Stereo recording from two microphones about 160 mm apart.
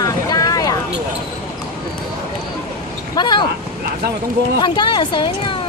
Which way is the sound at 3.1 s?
30° left (ahead or behind).